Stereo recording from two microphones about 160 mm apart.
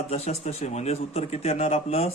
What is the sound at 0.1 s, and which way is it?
Speech, 40° left (ahead or behind).